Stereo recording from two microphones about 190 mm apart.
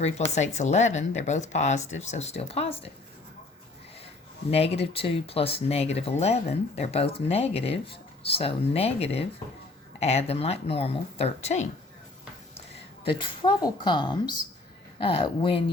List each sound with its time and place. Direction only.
0.3 s speech: 35° left (ahead or behind)
4.5 s speech: 30° left (ahead or behind)
13.1 s a woman's voice: 25° left (ahead or behind)